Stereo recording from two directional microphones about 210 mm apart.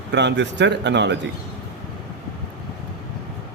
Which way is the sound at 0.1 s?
55° right (ahead or behind).